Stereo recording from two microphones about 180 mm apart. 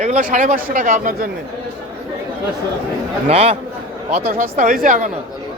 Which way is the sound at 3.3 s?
35° right (ahead or behind).